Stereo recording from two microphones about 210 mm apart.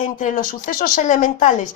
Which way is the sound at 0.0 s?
35° left (ahead or behind).